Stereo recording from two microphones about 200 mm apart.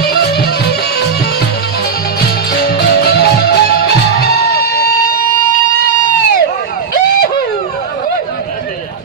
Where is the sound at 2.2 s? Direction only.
50° left (ahead or behind).